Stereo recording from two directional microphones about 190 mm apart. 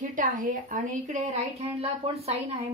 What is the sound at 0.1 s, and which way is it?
A woman's voice, 40° right (ahead or behind).